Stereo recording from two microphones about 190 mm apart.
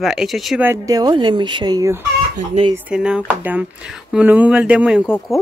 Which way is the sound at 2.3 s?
35° right (ahead or behind).